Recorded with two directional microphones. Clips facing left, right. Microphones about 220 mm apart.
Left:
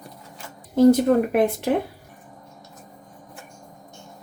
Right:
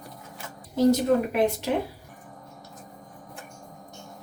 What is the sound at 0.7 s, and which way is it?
Speech, 55° left (ahead or behind).